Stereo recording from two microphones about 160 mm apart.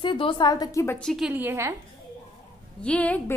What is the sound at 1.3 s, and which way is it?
Speech, 10° right (ahead or behind).